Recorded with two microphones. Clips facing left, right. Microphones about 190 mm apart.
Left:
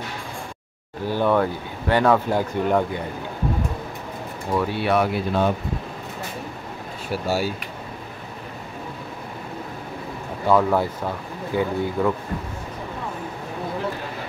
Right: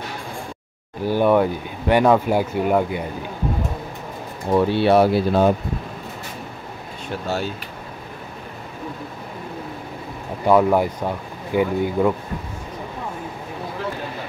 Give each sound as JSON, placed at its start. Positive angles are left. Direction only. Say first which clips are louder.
{"t": 1.0, "sound": "speech", "louder": "right 3 dB", "side_deg": -15}
{"t": 4.5, "sound": "speech", "louder": "right 6 dB", "side_deg": -25}
{"t": 7.1, "sound": "speech", "louder": "left 2 dB", "side_deg": 10}
{"t": 10.4, "sound": "speech", "louder": "right 3 dB", "side_deg": -15}